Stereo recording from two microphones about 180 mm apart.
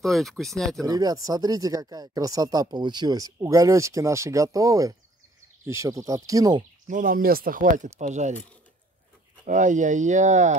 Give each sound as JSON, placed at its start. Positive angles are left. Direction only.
{"t": 0.0, "sound": "speech", "side_deg": 0}
{"t": 0.8, "sound": "speech", "side_deg": -20}
{"t": 6.9, "sound": "speech", "side_deg": -50}
{"t": 9.5, "sound": "speech", "side_deg": -45}